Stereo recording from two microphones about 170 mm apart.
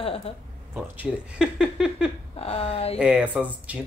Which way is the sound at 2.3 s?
35° left (ahead or behind).